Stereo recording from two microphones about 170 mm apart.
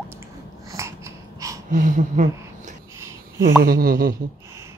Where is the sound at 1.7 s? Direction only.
45° right (ahead or behind).